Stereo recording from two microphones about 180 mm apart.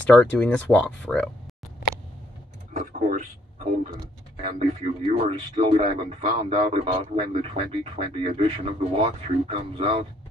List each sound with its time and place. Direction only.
0.0 s speech: 5° left (ahead or behind)
2.7 s a sound: 45° right (ahead or behind)
4.0 s speech: 35° right (ahead or behind)